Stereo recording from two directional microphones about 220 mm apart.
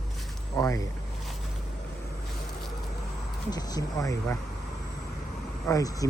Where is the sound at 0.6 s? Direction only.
15° left (ahead or behind).